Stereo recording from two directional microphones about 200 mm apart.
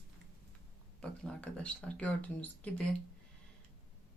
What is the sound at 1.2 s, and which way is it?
Speech, 5° left (ahead or behind).